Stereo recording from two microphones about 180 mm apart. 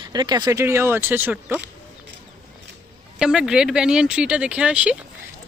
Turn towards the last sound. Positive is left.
turn(degrees=-5)  # may be behind; listen again after turning